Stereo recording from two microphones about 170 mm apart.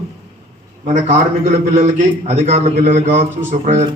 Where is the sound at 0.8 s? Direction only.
45° right (ahead or behind).